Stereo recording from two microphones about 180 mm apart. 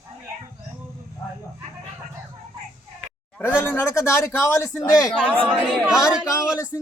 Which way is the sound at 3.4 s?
10° left (ahead or behind).